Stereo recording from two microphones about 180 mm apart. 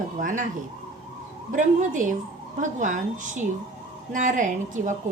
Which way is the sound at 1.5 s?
45° right (ahead or behind).